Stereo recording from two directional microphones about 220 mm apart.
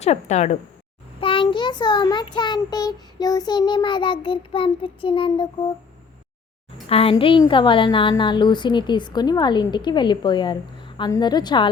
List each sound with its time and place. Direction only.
0.0 s a woman's voice: 30° left (ahead or behind)
6.8 s a woman's voice: 25° left (ahead or behind)